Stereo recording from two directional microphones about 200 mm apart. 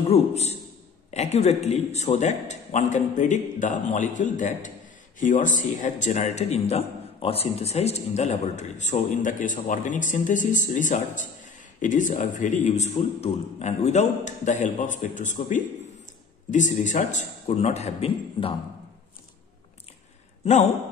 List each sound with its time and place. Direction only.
0.1 s a man's voice: 35° left (ahead or behind)